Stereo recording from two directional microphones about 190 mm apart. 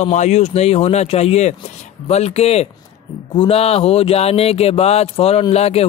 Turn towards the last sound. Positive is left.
turn(degrees=35)  # may be behind; listen again after turning